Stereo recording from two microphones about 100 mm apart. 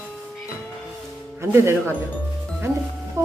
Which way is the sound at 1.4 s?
25° right (ahead or behind).